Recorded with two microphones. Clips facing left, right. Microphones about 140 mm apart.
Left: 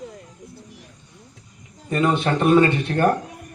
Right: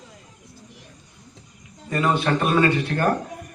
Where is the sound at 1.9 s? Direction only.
25° left (ahead or behind).